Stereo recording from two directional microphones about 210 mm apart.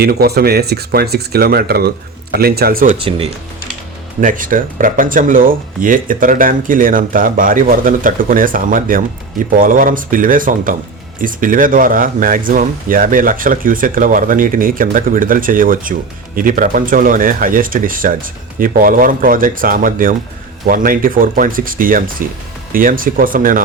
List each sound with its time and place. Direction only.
0.0 s speech: 50° right (ahead or behind)
3.0 s speech: 25° right (ahead or behind)
4.2 s speech: 40° right (ahead or behind)